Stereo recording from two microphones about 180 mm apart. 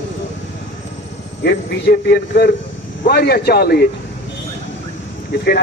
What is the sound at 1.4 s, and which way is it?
A man's voice, 65° left (ahead or behind).